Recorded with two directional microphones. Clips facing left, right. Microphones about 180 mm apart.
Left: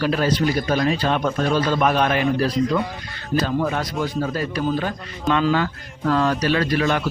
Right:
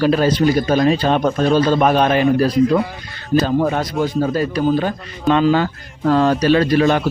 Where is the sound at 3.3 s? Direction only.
35° right (ahead or behind).